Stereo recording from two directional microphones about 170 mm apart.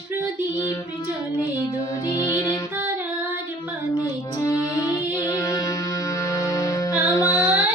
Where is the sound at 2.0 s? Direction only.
20° left (ahead or behind).